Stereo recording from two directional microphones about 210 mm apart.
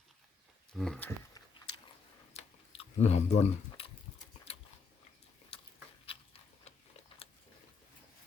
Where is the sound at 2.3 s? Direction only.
30° left (ahead or behind).